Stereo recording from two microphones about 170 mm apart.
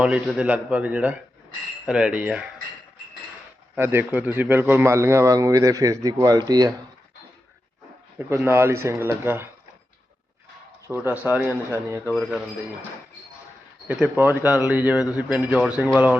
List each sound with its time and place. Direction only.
0.0 s speech: 5° right (ahead or behind)
1.9 s cutlery: 5° right (ahead or behind)
3.8 s speech: 10° right (ahead or behind)
8.3 s speech: 15° right (ahead or behind)
10.8 s speech: 10° right (ahead or behind)
13.8 s speech: 10° right (ahead or behind)